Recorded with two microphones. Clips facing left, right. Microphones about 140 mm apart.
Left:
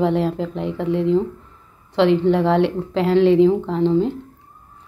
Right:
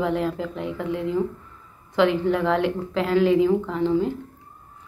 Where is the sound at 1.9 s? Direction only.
30° left (ahead or behind).